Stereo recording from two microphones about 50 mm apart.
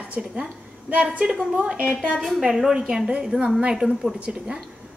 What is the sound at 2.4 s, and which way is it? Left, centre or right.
A woman's voice, centre.